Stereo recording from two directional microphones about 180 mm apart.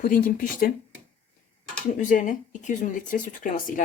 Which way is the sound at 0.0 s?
50° left (ahead or behind).